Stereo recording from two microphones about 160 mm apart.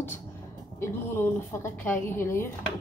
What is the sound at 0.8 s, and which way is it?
A woman's voice, 15° left (ahead or behind).